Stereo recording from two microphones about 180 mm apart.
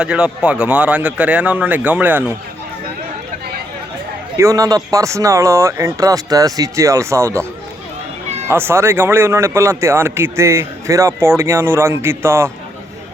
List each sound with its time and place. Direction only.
0.0 s speech: 5° right (ahead or behind)
4.4 s speech: 15° right (ahead or behind)
8.4 s speech: 15° right (ahead or behind)